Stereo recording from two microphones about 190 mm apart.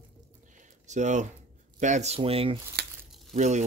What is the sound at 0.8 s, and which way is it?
Speech, 40° right (ahead or behind).